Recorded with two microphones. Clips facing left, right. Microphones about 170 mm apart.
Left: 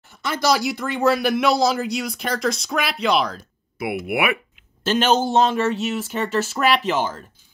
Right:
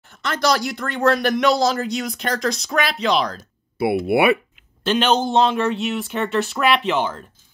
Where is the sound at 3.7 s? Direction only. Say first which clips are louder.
Right 6 dB; 30° right (ahead or behind).